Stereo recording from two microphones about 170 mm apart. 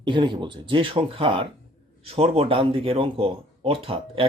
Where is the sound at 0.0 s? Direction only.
25° right (ahead or behind).